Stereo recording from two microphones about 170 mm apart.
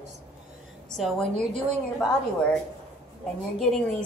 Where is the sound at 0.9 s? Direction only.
Centre (ahead or behind).